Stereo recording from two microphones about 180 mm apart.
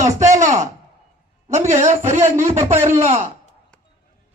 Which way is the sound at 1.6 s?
40° right (ahead or behind).